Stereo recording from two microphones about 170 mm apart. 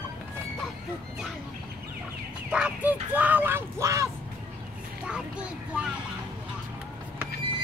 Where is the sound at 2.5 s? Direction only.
5° right (ahead or behind).